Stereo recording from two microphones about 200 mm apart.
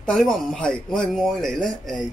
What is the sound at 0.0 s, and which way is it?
Speech, centre (ahead or behind).